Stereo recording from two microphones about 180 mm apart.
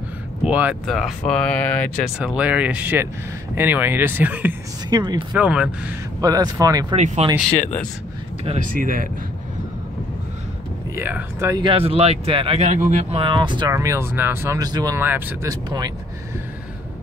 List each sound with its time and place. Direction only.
0.4 s speech: 5° right (ahead or behind)
2.1 s speech: 5° right (ahead or behind)
4.8 s speech: 25° right (ahead or behind)
5.3 s speech: 5° right (ahead or behind)
6.2 s speech: 20° right (ahead or behind)
7.2 s speech: 35° right (ahead or behind)
8.6 s speech: 50° right (ahead or behind)
11.0 s speech: 10° right (ahead or behind)
11.6 s speech: 30° right (ahead or behind); by 15.5 s 10° right (ahead or behind)